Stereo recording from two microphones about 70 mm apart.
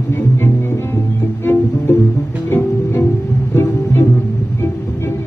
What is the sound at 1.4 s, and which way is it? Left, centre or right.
Music, left.